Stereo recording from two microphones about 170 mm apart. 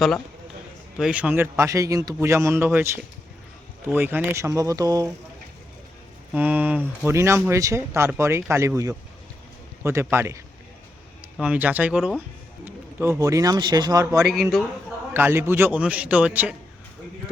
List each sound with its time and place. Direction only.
0.9 s speech: 5° right (ahead or behind)
6.3 s speech: 10° right (ahead or behind)
12.6 s speech: 15° right (ahead or behind)
14.2 s speech: centre (ahead or behind)
15.1 s speech: 15° right (ahead or behind)